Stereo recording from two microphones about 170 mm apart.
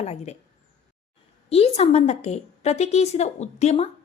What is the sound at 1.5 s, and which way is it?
A woman's voice, 35° left (ahead or behind).